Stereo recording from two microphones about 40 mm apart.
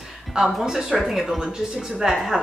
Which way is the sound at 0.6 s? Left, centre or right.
Centre.